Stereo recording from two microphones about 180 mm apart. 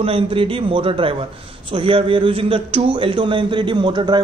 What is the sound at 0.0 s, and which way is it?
A man's voice, 30° right (ahead or behind).